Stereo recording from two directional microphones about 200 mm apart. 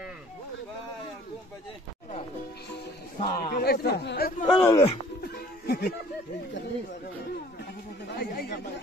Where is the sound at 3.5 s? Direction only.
50° left (ahead or behind).